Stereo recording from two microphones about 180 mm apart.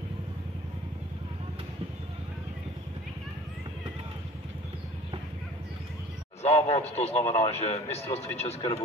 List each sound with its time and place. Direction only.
6.4 s speech: 35° left (ahead or behind)